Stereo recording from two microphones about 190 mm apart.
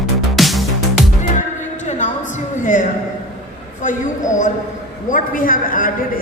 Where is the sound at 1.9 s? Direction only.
40° left (ahead or behind).